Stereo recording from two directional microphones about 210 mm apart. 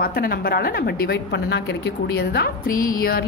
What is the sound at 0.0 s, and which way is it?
A woman's voice, 45° left (ahead or behind).